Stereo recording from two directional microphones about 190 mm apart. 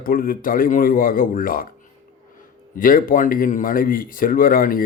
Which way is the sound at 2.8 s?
45° left (ahead or behind).